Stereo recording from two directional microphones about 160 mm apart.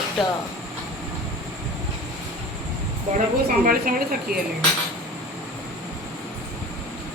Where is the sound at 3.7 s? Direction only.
65° right (ahead or behind).